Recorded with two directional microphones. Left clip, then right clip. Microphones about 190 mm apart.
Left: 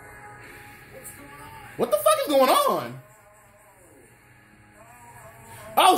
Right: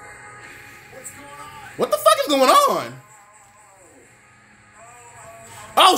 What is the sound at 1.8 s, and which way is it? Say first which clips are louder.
Speech: right 4 dB; 30° right (ahead or behind).